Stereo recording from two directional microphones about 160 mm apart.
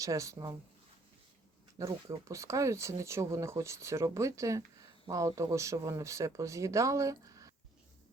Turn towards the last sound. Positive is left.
turn(degrees=-20)  # may be behind; listen again after turning